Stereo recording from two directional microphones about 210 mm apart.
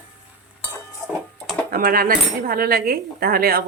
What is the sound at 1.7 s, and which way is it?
Speech, 45° right (ahead or behind).